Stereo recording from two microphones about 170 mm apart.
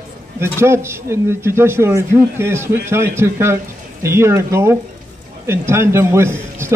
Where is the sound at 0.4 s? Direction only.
15° right (ahead or behind).